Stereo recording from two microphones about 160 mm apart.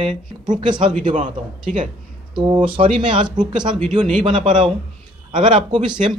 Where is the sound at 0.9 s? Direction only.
50° right (ahead or behind).